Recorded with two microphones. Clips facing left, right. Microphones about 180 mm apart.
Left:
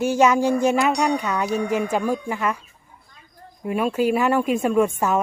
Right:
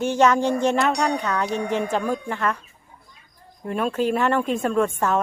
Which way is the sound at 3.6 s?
5° left (ahead or behind).